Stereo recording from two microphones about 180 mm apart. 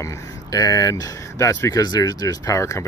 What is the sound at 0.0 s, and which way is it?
Speech, 20° left (ahead or behind).